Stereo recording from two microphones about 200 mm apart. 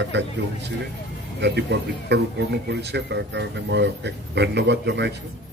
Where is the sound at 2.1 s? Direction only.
55° right (ahead or behind).